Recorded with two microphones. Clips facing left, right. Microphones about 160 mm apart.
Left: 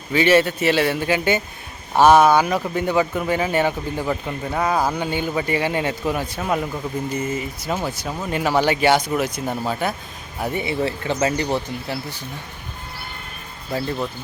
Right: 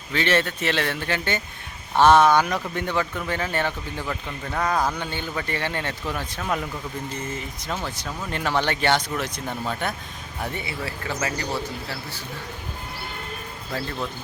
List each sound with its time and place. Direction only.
0.1 s speech: 10° left (ahead or behind)
4.6 s speech: 5° left (ahead or behind)
10.4 s speech: 15° left (ahead or behind)